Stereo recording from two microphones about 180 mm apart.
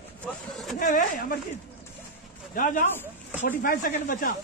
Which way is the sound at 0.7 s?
50° left (ahead or behind).